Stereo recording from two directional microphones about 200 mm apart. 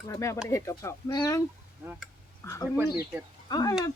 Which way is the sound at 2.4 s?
15° left (ahead or behind).